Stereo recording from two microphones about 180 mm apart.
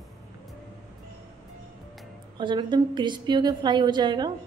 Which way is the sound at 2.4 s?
25° right (ahead or behind).